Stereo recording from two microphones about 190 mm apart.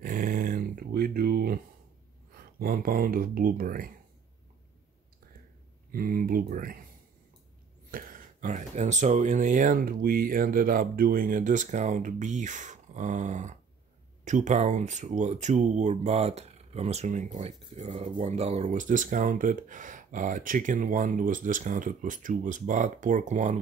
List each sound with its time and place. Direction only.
0.0 s a sound: 45° right (ahead or behind)
2.6 s speech: 50° right (ahead or behind)
5.9 s speech: 50° right (ahead or behind)
7.9 s speech: 45° right (ahead or behind)